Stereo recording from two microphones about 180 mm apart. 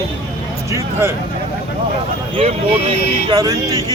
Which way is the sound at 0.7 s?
15° right (ahead or behind).